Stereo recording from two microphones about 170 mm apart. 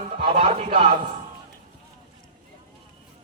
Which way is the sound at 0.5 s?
45° right (ahead or behind).